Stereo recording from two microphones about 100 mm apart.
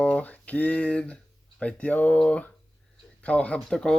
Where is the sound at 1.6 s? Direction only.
15° left (ahead or behind).